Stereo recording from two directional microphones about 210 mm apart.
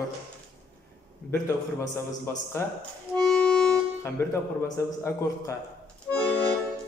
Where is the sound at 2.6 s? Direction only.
10° left (ahead or behind).